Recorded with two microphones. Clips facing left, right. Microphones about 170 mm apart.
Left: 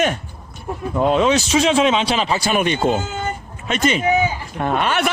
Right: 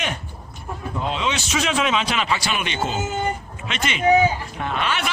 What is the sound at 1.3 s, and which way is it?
A man's voice, 30° left (ahead or behind).